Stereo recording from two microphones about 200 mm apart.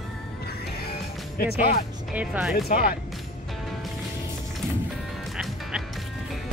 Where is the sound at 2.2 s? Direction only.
5° right (ahead or behind).